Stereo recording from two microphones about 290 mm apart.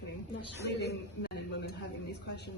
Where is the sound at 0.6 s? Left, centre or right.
Left.